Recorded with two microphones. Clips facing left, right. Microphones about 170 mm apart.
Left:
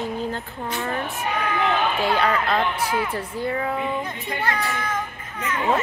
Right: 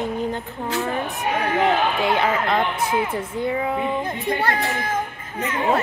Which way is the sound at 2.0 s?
20° right (ahead or behind).